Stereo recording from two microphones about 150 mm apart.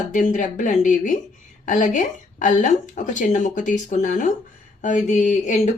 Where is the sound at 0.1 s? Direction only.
60° left (ahead or behind).